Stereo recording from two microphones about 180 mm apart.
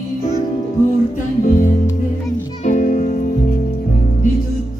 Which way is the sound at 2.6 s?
45° left (ahead or behind).